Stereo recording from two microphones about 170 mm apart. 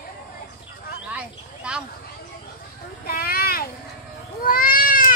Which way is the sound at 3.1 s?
60° left (ahead or behind).